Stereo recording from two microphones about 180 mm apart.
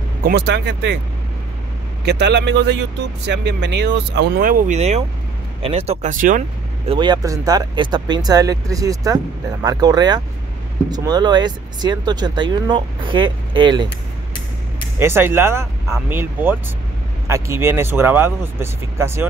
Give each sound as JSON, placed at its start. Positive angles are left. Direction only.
{"t": 0.2, "sound": "speech", "side_deg": -65}
{"t": 2.0, "sound": "speech", "side_deg": -70}
{"t": 6.9, "sound": "speech", "side_deg": -25}
{"t": 15.0, "sound": "speech", "side_deg": -15}